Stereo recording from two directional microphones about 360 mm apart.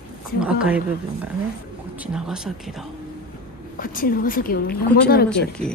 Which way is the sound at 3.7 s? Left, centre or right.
Left.